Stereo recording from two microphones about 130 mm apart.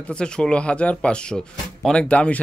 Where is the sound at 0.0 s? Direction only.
5° left (ahead or behind).